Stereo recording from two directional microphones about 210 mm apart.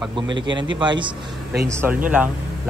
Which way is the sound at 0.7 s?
20° right (ahead or behind).